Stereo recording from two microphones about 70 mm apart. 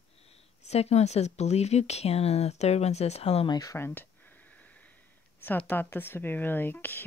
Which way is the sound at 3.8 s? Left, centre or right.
Left.